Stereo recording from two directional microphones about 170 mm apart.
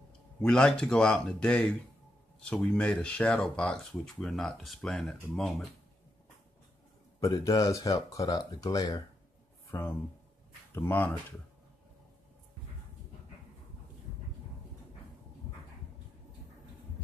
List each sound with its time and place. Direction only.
0.4 s speech: 5° left (ahead or behind)
7.2 s speech: 20° left (ahead or behind)
9.7 s speech: 10° left (ahead or behind)